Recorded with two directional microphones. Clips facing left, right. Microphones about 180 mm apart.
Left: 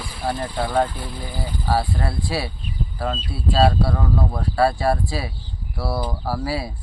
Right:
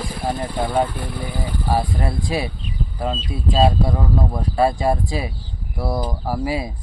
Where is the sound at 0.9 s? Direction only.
65° right (ahead or behind).